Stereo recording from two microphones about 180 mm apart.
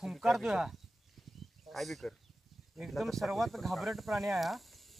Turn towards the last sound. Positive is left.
turn(degrees=0)  # may be behind; listen again after turning